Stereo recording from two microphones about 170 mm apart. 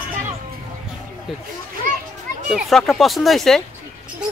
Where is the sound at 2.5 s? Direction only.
Centre (ahead or behind).